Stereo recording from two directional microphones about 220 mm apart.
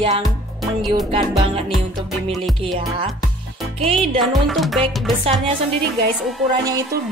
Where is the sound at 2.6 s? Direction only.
25° right (ahead or behind).